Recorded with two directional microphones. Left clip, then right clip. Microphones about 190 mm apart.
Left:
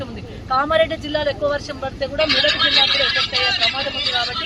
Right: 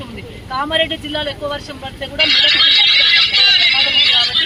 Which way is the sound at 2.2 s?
45° left (ahead or behind).